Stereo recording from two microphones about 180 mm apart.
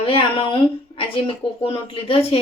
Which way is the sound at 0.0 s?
30° left (ahead or behind).